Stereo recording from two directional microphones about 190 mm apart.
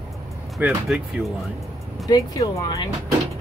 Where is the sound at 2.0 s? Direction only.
20° left (ahead or behind).